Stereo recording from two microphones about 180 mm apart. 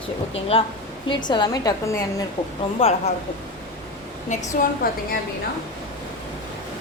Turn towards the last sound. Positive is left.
turn(degrees=55)  # may be behind; listen again after turning